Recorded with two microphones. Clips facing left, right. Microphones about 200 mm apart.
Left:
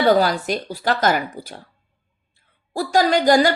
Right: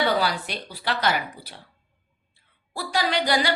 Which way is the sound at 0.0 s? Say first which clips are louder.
Left 7 dB; 45° left (ahead or behind).